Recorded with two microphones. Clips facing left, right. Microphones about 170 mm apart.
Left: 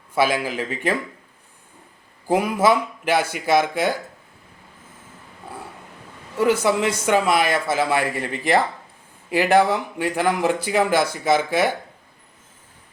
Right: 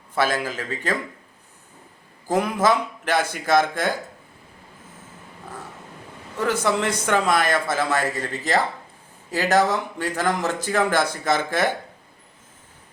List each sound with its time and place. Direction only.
0.1 s a man's voice: 10° left (ahead or behind)
2.2 s a man's voice: 10° left (ahead or behind)
6.3 s a man's voice: 10° left (ahead or behind)